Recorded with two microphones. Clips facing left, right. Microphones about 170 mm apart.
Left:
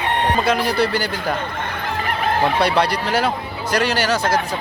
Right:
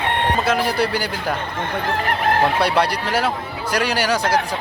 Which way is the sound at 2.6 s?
10° right (ahead or behind).